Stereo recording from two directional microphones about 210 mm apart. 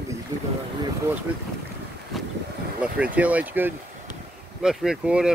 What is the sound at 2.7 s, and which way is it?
Speech, 5° right (ahead or behind).